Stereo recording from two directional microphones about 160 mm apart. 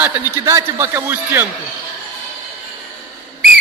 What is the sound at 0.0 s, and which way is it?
A man's voice, 15° right (ahead or behind).